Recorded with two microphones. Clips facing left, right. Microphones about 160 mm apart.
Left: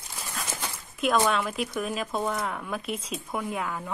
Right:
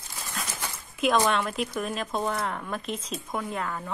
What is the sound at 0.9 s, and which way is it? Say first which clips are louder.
Speech: right 1 dB; centre (ahead or behind).